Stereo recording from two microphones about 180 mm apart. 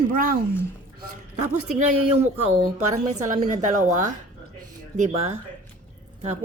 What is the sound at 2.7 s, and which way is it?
A woman's voice, 40° right (ahead or behind).